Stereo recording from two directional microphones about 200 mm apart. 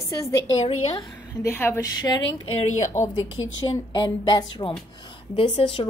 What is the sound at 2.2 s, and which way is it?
Speech, 90° left.